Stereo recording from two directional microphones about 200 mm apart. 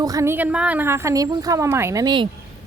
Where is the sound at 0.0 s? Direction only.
15° right (ahead or behind).